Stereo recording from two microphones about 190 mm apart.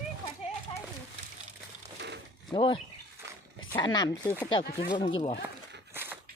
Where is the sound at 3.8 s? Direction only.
20° left (ahead or behind).